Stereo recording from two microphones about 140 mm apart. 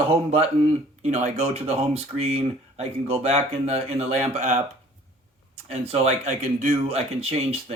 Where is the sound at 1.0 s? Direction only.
55° right (ahead or behind).